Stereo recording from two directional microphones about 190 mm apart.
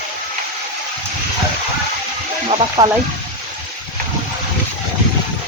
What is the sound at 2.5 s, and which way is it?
Speech, 25° right (ahead or behind).